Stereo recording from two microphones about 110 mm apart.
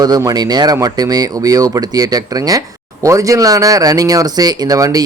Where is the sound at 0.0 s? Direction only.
35° right (ahead or behind).